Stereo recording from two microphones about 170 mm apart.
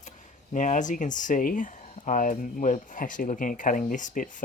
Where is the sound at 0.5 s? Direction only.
50° left (ahead or behind).